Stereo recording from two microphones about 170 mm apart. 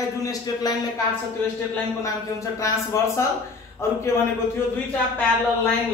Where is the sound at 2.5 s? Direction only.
20° left (ahead or behind).